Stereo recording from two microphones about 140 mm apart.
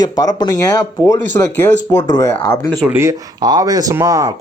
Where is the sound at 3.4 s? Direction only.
30° right (ahead or behind).